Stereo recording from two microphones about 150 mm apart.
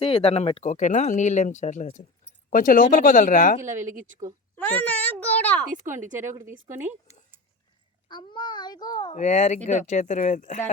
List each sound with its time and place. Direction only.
0.0 s speech: 40° left (ahead or behind)
2.5 s speech: 65° left (ahead or behind)
3.7 s speech: 55° right (ahead or behind)
4.5 s a child's voice: 10° left (ahead or behind)
6.0 s speech: 55° right (ahead or behind)
6.7 s speech: 15° right (ahead or behind)
8.0 s a child's voice: 30° left (ahead or behind)
9.1 s speech: 50° left (ahead or behind)